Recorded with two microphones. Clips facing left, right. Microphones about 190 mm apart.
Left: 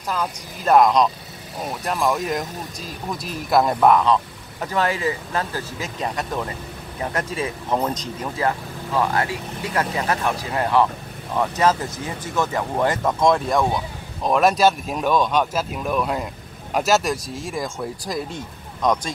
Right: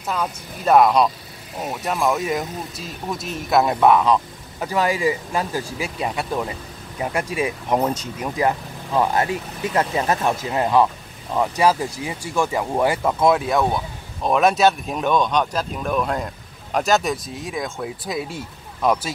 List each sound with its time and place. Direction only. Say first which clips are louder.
0.1 s speech: right 1 dB; centre (ahead or behind)